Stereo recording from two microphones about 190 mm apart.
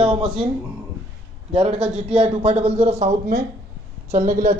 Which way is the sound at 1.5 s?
30° right (ahead or behind).